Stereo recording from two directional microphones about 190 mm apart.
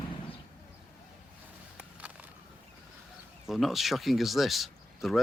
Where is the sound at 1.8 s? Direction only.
5° right (ahead or behind).